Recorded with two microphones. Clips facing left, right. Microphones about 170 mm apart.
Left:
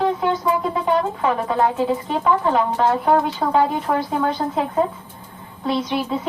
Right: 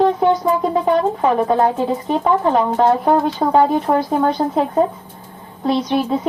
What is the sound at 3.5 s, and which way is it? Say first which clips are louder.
Speech: right 5 dB; 40° right (ahead or behind).